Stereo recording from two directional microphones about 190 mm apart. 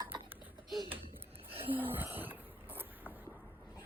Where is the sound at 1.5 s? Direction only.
10° right (ahead or behind).